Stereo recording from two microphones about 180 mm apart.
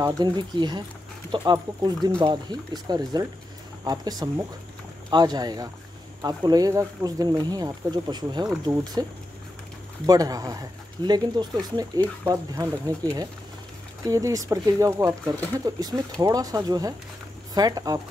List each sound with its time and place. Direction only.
0.0 s speech: 25° right (ahead or behind)
10.0 s speech: 20° right (ahead or behind)